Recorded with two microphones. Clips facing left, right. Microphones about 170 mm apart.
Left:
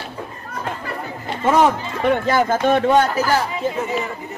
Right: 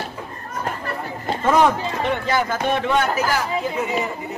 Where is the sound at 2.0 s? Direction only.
50° left (ahead or behind).